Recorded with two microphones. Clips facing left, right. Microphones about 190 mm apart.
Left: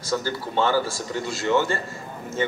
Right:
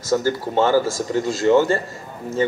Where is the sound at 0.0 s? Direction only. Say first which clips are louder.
Right 6 dB; 45° right (ahead or behind).